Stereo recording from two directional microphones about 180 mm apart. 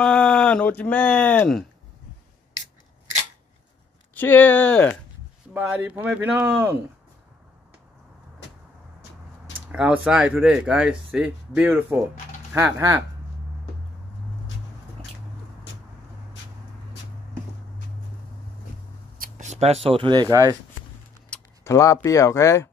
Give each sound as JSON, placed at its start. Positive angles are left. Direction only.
{"t": 0.0, "sound": "speech", "side_deg": 5}
{"t": 4.1, "sound": "speech", "side_deg": 10}
{"t": 5.5, "sound": "speech", "side_deg": -10}
{"t": 9.7, "sound": "speech", "side_deg": -5}
{"t": 19.1, "sound": "speech", "side_deg": -50}
{"t": 21.3, "sound": "speech", "side_deg": 15}